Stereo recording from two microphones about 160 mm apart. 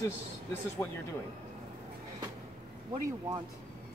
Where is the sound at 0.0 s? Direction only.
15° left (ahead or behind).